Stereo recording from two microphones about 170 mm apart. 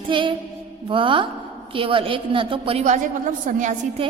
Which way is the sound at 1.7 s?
30° right (ahead or behind).